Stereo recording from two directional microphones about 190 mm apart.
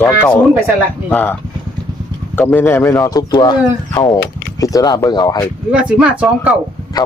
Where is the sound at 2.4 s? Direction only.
10° left (ahead or behind).